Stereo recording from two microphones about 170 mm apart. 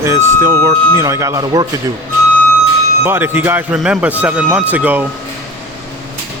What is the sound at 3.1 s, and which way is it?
Speech, 15° right (ahead or behind).